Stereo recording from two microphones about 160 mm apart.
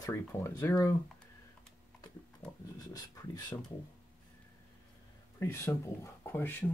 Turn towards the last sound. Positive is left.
turn(degrees=15)  # may be behind; listen again after turning